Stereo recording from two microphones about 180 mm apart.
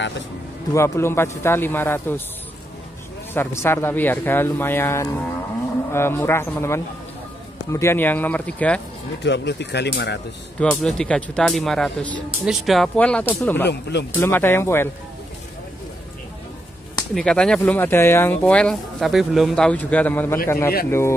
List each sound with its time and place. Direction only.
0.7 s speech: 15° left (ahead or behind)
3.3 s speech: 15° left (ahead or behind)
9.2 s speech: 75° left (ahead or behind)
10.6 s speech: 5° left (ahead or behind)
13.7 s speech: 70° left (ahead or behind)
14.2 s speech: 10° left (ahead or behind)
17.1 s speech: 5° left (ahead or behind)